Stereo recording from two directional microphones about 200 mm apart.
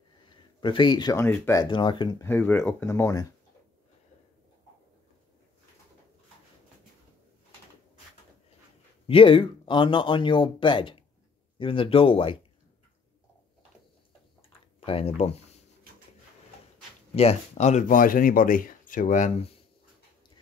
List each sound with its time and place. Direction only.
0.3 s speech: 25° left (ahead or behind)
2.2 s speech: 10° left (ahead or behind)
9.0 s speech: 25° left (ahead or behind)
17.1 s speech: 30° left (ahead or behind)